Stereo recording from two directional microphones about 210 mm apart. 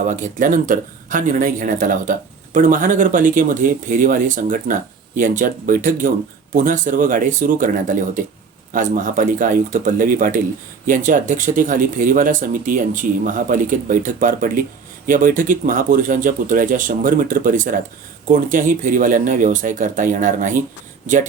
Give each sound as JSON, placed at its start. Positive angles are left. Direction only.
{"t": 0.1, "sound": "speech", "side_deg": -40}